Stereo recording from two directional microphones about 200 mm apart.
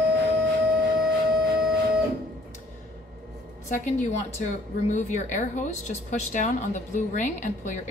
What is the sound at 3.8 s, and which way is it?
Speech, 35° left (ahead or behind).